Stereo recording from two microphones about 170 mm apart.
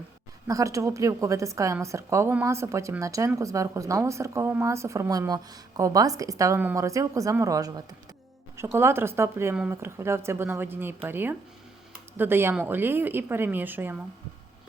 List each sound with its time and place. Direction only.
0.4 s a woman's voice: 20° right (ahead or behind)